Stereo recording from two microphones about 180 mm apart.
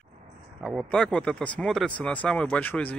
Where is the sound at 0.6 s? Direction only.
5° left (ahead or behind).